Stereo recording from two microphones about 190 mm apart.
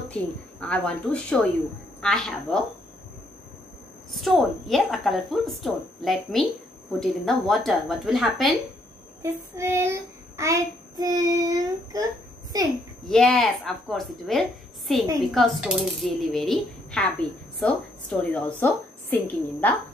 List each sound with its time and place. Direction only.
0.1 s speech: 5° left (ahead or behind)
4.1 s speech: centre (ahead or behind)
9.2 s child singing: 15° right (ahead or behind)
13.1 s a woman's voice: centre (ahead or behind)